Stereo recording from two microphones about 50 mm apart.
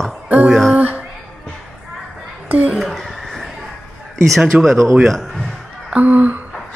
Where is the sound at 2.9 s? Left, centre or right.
Centre.